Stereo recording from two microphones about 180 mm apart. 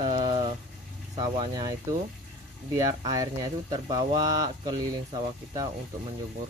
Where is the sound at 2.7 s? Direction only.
20° right (ahead or behind).